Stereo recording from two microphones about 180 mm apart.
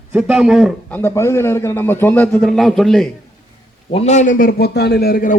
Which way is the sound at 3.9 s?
35° left (ahead or behind).